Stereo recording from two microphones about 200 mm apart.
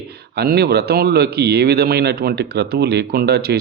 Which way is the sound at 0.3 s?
55° right (ahead or behind).